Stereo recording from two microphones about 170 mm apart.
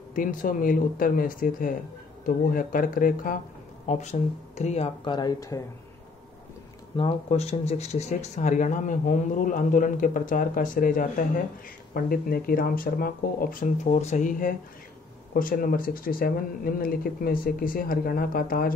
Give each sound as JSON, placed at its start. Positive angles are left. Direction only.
{"t": 0.1, "sound": "speech", "side_deg": 55}
{"t": 3.8, "sound": "speech", "side_deg": 40}
{"t": 7.0, "sound": "speech", "side_deg": 35}